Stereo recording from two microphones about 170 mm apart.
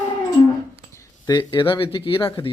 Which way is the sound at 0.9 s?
20° left (ahead or behind).